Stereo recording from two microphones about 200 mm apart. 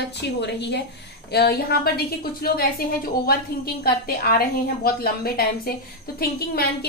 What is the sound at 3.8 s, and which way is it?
A woman's voice, 50° left (ahead or behind).